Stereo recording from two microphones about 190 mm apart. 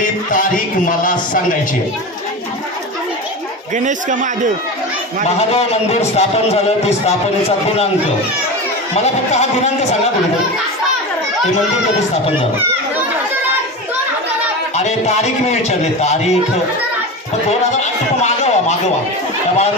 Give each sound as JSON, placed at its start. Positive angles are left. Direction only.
{"t": 0.0, "sound": "a sound", "side_deg": 45}
{"t": 3.7, "sound": "a man's voice", "side_deg": -40}
{"t": 5.5, "sound": "a man's voice", "side_deg": 35}
{"t": 8.9, "sound": "a man's voice", "side_deg": 35}
{"t": 14.8, "sound": "a man's voice", "side_deg": 35}
{"t": 18.2, "sound": "a man's voice", "side_deg": 35}